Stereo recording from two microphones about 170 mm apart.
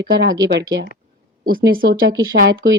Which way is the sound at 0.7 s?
90° right.